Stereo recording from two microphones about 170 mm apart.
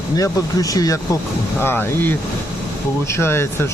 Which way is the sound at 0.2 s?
20° left (ahead or behind).